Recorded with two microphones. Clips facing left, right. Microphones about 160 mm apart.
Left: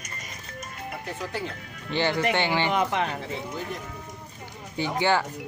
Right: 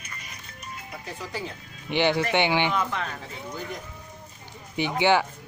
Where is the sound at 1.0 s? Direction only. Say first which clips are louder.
Left 1 dB; centre (ahead or behind).